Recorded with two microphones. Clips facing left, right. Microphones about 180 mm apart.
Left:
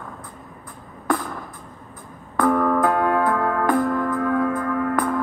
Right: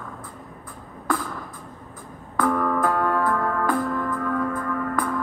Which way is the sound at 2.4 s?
15° left (ahead or behind).